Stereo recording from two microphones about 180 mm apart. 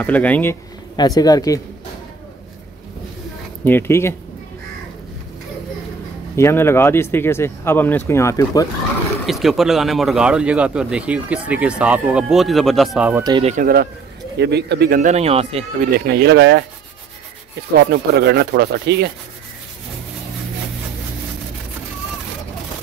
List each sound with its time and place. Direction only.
0.0 s speech: 10° left (ahead or behind)
0.9 s speech: 20° left (ahead or behind)
3.6 s speech: 10° left (ahead or behind)
6.3 s speech: 15° left (ahead or behind)
9.2 s speech: centre (ahead or behind)
13.1 s speech: 20° right (ahead or behind)
13.4 s speech: 40° right (ahead or behind)
14.4 s speech: 65° right (ahead or behind)
15.0 s speech: 40° right (ahead or behind)
16.1 s speech: 70° right (ahead or behind)
17.7 s speech: 60° right (ahead or behind)